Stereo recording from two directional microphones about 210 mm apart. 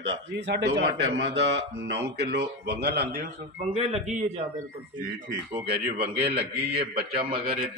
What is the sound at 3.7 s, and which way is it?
Speech, 30° right (ahead or behind).